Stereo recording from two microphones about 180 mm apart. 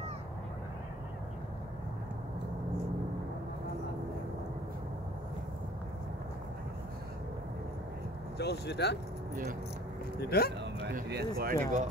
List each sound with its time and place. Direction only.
8.4 s speech: 65° left (ahead or behind)
9.3 s speech: 50° right (ahead or behind)
10.3 s speech: 60° left (ahead or behind)
11.3 s speech: 50° right (ahead or behind)